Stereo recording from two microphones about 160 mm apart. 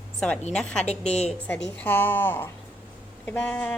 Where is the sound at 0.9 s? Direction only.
45° left (ahead or behind).